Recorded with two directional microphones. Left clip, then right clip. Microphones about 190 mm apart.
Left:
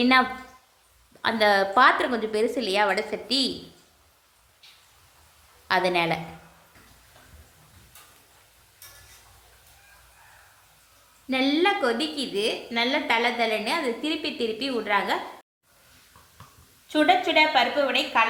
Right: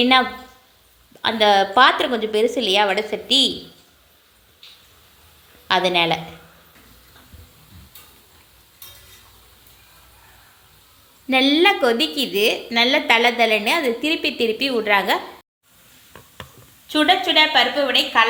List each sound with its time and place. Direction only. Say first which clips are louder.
0.0 s a woman's voice: right 4 dB; 5° right (ahead or behind)
5.6 s a woman's voice: right 5 dB; 10° right (ahead or behind)
11.3 s a woman's voice: right 7 dB; 30° right (ahead or behind)
16.9 s a woman's voice: right 4 dB; 20° right (ahead or behind)